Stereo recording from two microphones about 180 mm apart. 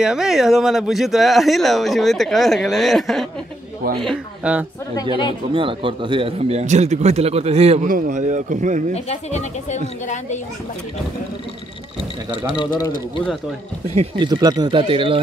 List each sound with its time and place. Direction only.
0.0 s a man's voice: 5° right (ahead or behind)
5.5 s a man's voice: 30° right (ahead or behind); by 8.8 s 45° right (ahead or behind)
8.9 s speech: 40° left (ahead or behind)
12.4 s speech: 20° left (ahead or behind)
13.9 s speech: 25° right (ahead or behind)